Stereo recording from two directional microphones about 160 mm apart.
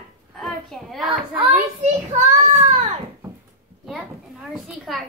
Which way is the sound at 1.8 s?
50° right (ahead or behind).